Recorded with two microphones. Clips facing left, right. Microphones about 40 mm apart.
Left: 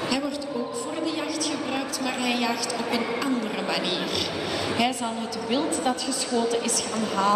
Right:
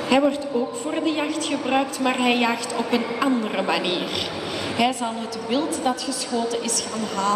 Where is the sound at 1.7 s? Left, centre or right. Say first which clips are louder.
Right 7 dB; right.